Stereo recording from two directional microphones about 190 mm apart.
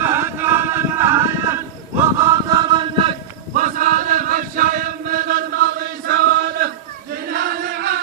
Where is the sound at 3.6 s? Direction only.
45° right (ahead or behind).